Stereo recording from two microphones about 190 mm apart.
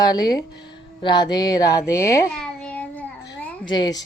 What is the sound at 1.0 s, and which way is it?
Speech, 25° left (ahead or behind).